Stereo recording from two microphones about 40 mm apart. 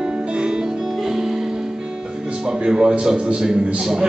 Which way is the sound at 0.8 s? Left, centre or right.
Centre.